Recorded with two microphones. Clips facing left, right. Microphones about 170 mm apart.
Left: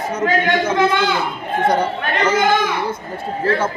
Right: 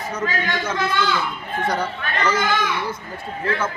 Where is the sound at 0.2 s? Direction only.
55° left (ahead or behind).